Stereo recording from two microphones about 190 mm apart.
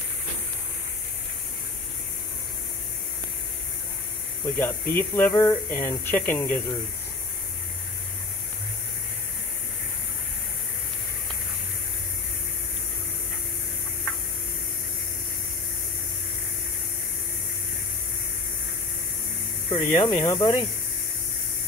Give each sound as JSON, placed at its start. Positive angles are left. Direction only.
{"t": 4.6, "sound": "speech", "side_deg": 10}
{"t": 19.7, "sound": "speech", "side_deg": 30}